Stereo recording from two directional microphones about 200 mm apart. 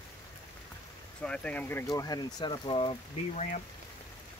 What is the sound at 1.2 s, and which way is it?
Speech, 5° left (ahead or behind).